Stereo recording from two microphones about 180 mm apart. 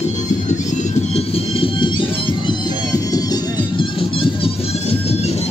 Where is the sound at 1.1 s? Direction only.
30° left (ahead or behind).